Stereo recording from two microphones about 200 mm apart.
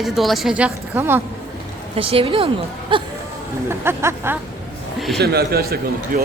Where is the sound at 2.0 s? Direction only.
30° right (ahead or behind).